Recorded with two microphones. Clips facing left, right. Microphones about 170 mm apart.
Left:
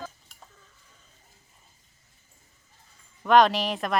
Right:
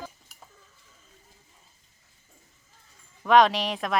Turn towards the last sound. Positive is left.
turn(degrees=0)  # may be behind; listen again after turning